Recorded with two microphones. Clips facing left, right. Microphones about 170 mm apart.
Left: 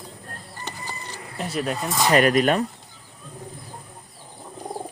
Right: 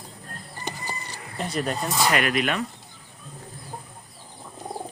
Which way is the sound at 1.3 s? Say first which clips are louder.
Left 1 dB; 5° left (ahead or behind).